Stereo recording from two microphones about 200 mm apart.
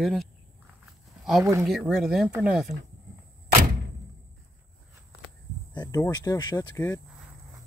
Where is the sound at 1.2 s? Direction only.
Centre (ahead or behind).